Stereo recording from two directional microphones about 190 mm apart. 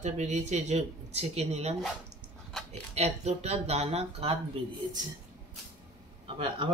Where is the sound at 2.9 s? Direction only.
35° right (ahead or behind).